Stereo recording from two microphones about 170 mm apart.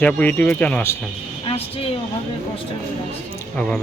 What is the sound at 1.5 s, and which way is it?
Speech, 35° left (ahead or behind).